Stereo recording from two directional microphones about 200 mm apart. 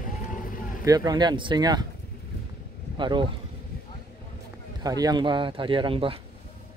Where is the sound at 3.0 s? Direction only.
25° right (ahead or behind).